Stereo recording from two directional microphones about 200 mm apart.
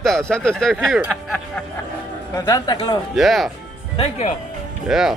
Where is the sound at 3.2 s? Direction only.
Centre (ahead or behind).